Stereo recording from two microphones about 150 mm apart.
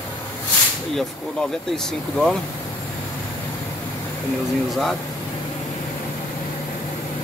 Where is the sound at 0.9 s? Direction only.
5° left (ahead or behind).